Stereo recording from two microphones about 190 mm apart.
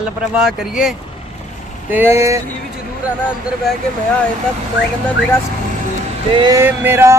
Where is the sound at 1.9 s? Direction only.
10° right (ahead or behind).